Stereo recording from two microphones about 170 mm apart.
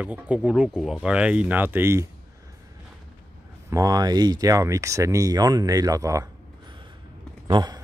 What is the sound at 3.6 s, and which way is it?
Speech, 20° right (ahead or behind).